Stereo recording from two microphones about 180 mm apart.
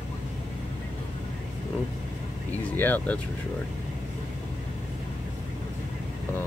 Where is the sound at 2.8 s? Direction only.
10° left (ahead or behind).